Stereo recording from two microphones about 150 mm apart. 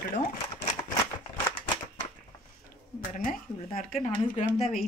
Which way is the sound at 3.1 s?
65° left (ahead or behind).